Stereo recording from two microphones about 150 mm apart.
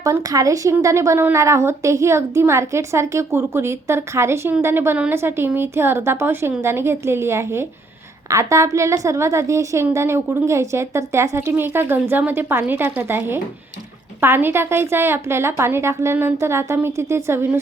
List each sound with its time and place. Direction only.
0.0 s a woman's voice: 25° right (ahead or behind)